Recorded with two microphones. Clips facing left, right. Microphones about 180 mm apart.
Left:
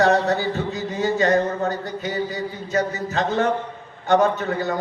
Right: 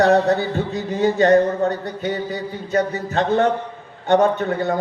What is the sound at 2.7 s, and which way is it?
A man's voice, 30° right (ahead or behind).